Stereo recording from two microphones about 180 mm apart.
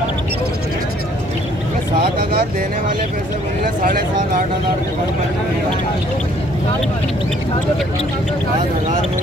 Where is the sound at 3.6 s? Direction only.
50° right (ahead or behind).